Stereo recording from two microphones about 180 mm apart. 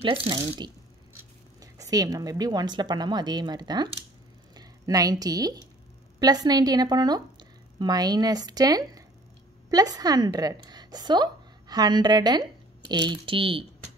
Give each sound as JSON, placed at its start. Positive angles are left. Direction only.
{"t": 0.0, "sound": "a woman's voice", "side_deg": -30}